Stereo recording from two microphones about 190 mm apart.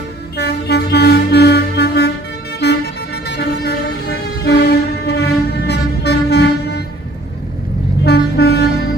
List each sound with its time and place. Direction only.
0.4 s music: 60° left (ahead or behind)
2.6 s vehicle: 60° left (ahead or behind)
8.0 s vehicle: 60° left (ahead or behind)